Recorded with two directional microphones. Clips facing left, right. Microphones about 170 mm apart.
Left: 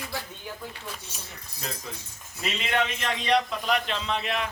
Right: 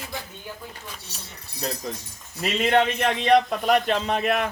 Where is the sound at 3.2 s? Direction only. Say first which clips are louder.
Right 5 dB; 50° right (ahead or behind).